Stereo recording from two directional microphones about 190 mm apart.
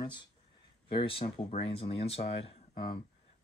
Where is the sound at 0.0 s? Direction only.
25° left (ahead or behind).